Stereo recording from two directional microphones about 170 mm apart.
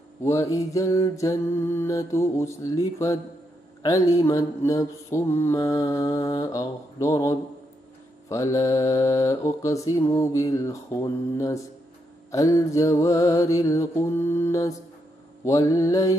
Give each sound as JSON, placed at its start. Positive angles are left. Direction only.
{"t": 0.2, "sound": "mantra", "side_deg": 20}